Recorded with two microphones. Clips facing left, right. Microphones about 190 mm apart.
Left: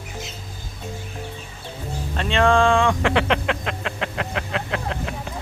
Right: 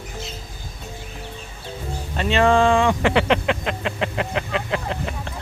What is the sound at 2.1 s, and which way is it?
Speech, 5° right (ahead or behind).